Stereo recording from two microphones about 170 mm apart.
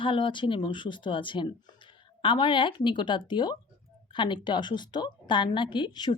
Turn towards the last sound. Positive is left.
turn(degrees=25)  # may be behind; listen again after turning